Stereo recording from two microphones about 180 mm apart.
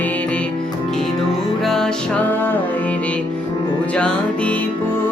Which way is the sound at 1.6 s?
Centre (ahead or behind).